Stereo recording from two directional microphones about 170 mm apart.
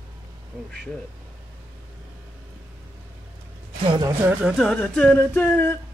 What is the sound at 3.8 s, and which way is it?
Speech, 25° right (ahead or behind).